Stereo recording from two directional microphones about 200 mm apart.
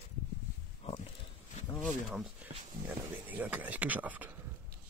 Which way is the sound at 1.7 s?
Centre (ahead or behind).